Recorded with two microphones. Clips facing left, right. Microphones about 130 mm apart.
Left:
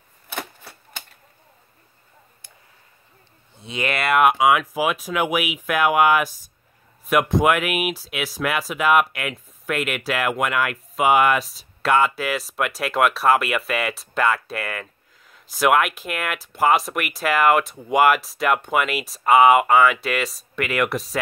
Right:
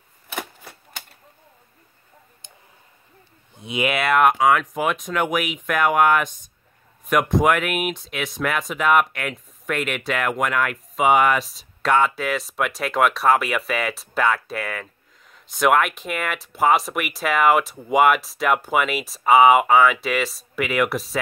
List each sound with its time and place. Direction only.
0.3 s a sound: 10° right (ahead or behind)
2.4 s tick: 20° right (ahead or behind)
3.5 s speech: 15° right (ahead or behind)
3.9 s speech: centre (ahead or behind)